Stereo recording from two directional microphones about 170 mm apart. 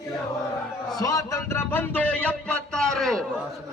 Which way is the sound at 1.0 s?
20° left (ahead or behind).